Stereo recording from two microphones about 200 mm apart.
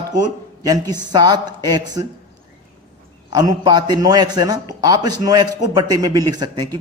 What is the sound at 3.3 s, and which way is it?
A man's voice, 20° right (ahead or behind).